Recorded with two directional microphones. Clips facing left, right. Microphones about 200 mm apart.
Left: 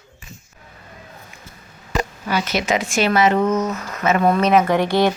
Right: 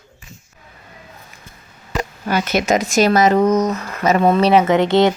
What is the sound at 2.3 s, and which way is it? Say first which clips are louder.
Speech: right 5 dB; 45° right (ahead or behind).